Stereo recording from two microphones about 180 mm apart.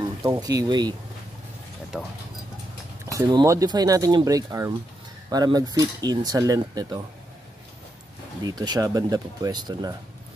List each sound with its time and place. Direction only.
0.2 s speech: 20° right (ahead or behind)
1.9 s speech: centre (ahead or behind)
3.1 s speech: 20° right (ahead or behind)
8.5 s speech: 20° right (ahead or behind)